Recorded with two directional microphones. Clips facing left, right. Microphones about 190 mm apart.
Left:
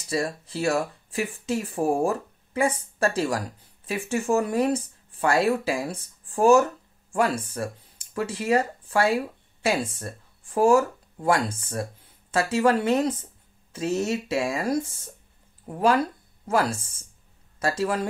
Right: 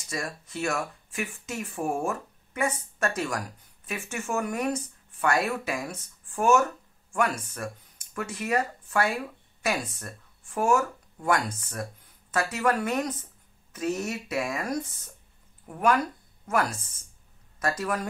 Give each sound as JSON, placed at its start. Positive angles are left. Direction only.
{"t": 0.1, "sound": "speech", "side_deg": 30}